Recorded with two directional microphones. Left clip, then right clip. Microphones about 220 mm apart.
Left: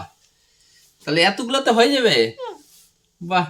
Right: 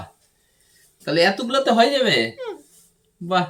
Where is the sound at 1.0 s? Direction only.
40° left (ahead or behind).